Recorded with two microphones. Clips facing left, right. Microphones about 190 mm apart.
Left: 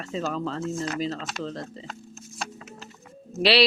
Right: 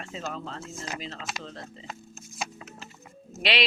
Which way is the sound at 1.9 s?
5° right (ahead or behind).